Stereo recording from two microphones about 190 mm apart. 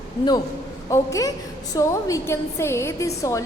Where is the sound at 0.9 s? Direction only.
15° left (ahead or behind).